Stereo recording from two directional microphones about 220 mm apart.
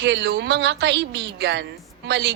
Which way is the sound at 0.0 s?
50° right (ahead or behind).